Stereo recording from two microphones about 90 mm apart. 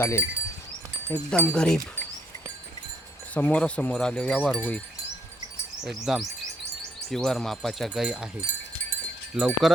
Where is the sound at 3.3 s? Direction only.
15° left (ahead or behind).